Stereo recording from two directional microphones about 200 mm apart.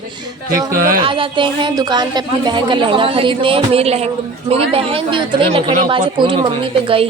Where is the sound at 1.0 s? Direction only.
25° right (ahead or behind).